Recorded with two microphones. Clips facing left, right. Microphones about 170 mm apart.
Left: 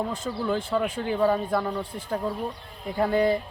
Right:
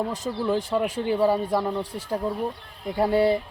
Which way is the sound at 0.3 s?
20° right (ahead or behind).